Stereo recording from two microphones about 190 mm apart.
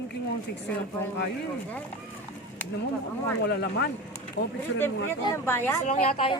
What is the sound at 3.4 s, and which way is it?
Speech, 65° left (ahead or behind).